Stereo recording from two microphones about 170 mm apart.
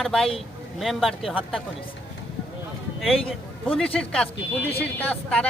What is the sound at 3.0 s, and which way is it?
Speech, centre (ahead or behind).